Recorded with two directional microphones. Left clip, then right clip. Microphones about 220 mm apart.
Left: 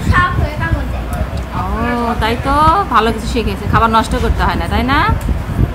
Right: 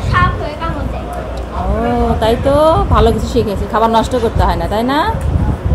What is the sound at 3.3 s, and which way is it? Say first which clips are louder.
Speech: right 1 dB; 5° left (ahead or behind).